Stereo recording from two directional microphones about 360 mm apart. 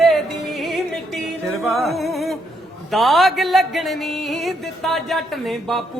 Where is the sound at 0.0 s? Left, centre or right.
Centre.